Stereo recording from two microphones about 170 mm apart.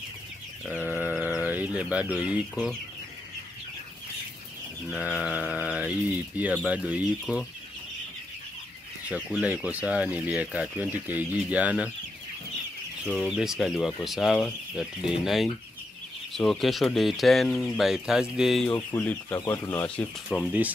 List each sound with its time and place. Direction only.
0.7 s goat: 10° right (ahead or behind)
1.4 s speech: 10° right (ahead or behind)
4.8 s speech: 5° right (ahead or behind)
9.3 s speech: 5° right (ahead or behind)
13.0 s speech: centre (ahead or behind)
18.8 s speech: 15° left (ahead or behind)
20.0 s speech: 5° left (ahead or behind)